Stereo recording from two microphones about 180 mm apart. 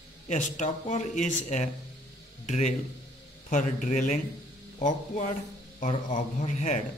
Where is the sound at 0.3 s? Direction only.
45° left (ahead or behind).